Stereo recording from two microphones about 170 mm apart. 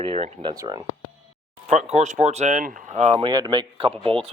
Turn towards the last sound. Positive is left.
turn(degrees=-30)  # may be behind; listen again after turning